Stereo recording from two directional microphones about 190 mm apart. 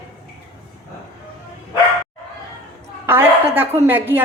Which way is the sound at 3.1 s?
10° right (ahead or behind).